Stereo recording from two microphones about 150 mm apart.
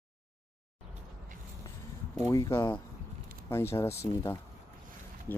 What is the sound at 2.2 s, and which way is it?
Speech, 20° left (ahead or behind).